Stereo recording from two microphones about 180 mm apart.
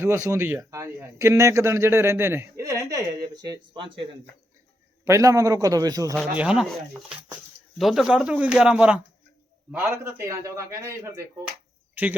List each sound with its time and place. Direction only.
0.0 s speech: 15° right (ahead or behind)
5.0 s speech: 15° right (ahead or behind)
6.3 s speech: 5° right (ahead or behind)
7.8 s speech: centre (ahead or behind)